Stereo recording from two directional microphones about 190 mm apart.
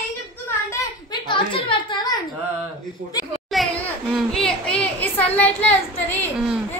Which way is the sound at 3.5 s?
Centre (ahead or behind).